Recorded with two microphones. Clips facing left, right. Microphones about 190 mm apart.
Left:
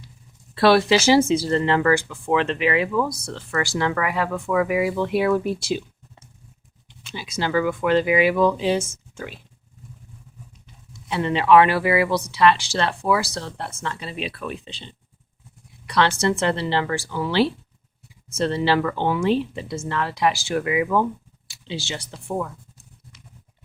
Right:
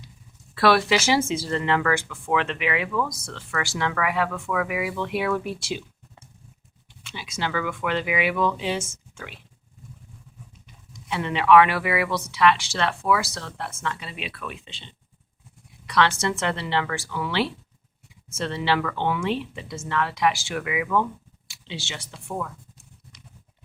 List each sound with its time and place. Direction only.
0.5 s speech: 30° left (ahead or behind)
7.0 s speech: 35° left (ahead or behind)
11.1 s speech: 35° left (ahead or behind)